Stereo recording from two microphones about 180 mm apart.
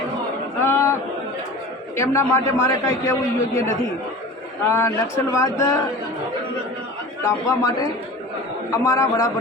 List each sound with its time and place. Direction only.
0.6 s a sound: 15° left (ahead or behind)
2.0 s a man's voice: 15° left (ahead or behind)
7.3 s a man's voice: 20° left (ahead or behind)